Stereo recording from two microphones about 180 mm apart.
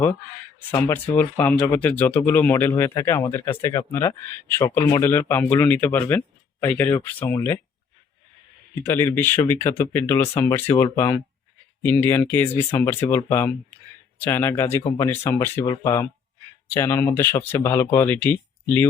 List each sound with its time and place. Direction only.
0.7 s speech: 15° left (ahead or behind)
8.9 s speech: 10° left (ahead or behind)